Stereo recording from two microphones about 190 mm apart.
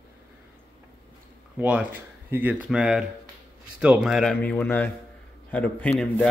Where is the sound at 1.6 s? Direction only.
5° right (ahead or behind).